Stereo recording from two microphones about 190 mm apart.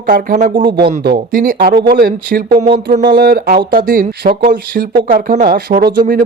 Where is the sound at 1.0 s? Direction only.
50° right (ahead or behind).